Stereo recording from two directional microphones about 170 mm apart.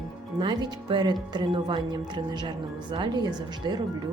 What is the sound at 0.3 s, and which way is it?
A woman's voice, 25° right (ahead or behind).